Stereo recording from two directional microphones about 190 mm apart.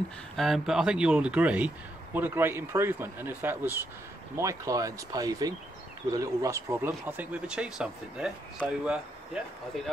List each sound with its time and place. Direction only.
0.4 s speech: centre (ahead or behind)